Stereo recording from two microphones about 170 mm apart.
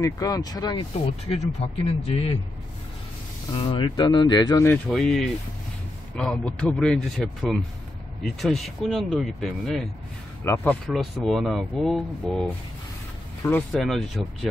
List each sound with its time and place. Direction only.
0.0 s speech: 20° left (ahead or behind)
3.5 s speech: 30° left (ahead or behind)
4.8 s speech: centre (ahead or behind)
10.4 s speech: 10° left (ahead or behind)
10.9 s speech: centre (ahead or behind)
13.7 s speech: centre (ahead or behind)